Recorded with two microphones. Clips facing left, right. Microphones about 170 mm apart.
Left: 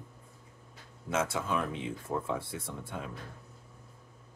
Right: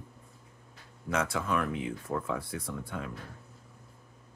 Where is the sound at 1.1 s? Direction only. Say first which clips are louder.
Right 1 dB; 25° left (ahead or behind).